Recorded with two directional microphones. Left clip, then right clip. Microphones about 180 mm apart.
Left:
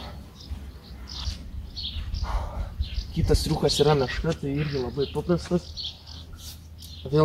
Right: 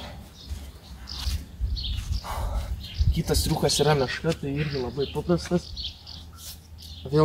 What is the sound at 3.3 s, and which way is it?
Speech, 25° right (ahead or behind).